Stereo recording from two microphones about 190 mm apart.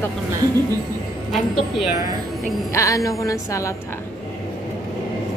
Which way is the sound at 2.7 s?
15° left (ahead or behind).